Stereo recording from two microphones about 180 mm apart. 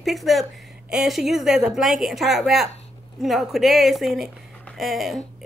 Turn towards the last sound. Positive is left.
turn(degrees=0)  # may be behind; listen again after turning